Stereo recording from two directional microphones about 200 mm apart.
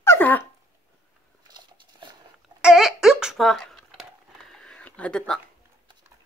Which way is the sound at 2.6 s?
5° right (ahead or behind).